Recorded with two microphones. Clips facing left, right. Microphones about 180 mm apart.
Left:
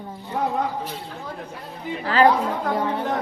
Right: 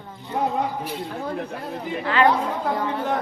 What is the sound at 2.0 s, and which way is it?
Speech, 35° left (ahead or behind).